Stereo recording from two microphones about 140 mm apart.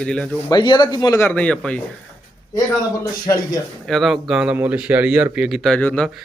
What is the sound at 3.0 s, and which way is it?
Speech, 25° left (ahead or behind).